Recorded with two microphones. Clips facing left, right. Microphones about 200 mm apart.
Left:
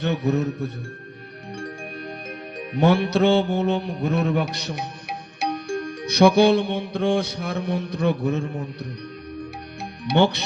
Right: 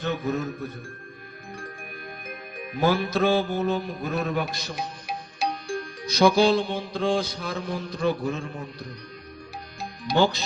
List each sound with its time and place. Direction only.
0.0 s music: 70° left (ahead or behind)
2.7 s music: 70° left (ahead or behind)
6.1 s mantra: 65° left (ahead or behind)
10.0 s mantra: 65° left (ahead or behind)